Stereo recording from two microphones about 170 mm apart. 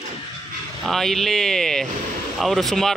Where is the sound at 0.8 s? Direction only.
Centre (ahead or behind).